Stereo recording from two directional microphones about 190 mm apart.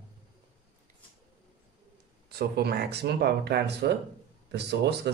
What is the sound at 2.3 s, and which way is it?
Speech, 55° right (ahead or behind).